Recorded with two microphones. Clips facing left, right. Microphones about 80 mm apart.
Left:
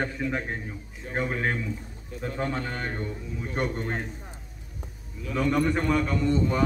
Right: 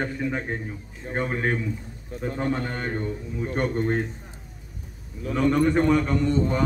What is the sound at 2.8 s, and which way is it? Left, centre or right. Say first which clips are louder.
Speech: right 4 dB; centre.